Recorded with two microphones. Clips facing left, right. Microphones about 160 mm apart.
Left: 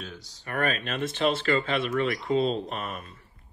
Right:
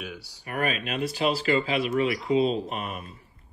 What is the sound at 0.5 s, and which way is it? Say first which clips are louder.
Speech: even; 40° left (ahead or behind).